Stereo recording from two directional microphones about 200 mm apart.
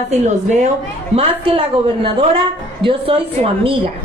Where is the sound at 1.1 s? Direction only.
30° right (ahead or behind).